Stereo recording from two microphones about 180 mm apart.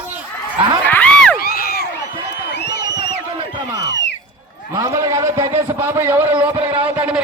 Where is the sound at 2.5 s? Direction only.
70° left (ahead or behind).